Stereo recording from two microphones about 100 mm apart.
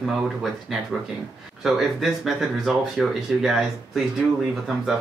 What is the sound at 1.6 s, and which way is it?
Speech, centre (ahead or behind).